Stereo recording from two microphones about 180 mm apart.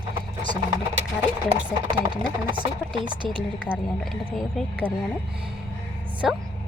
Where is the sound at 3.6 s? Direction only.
5° right (ahead or behind).